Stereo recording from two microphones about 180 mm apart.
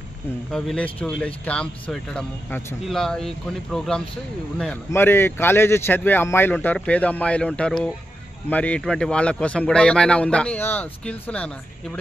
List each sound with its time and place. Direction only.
0.5 s speech: 5° left (ahead or behind)